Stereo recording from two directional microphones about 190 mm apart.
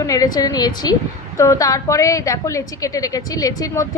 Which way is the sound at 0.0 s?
20° left (ahead or behind).